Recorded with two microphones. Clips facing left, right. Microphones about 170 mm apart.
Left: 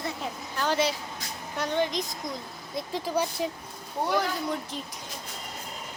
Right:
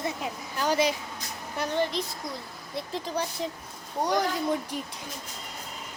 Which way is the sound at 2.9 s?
5° left (ahead or behind).